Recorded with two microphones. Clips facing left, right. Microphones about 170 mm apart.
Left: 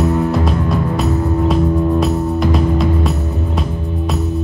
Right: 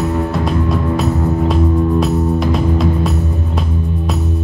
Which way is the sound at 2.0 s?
Centre (ahead or behind).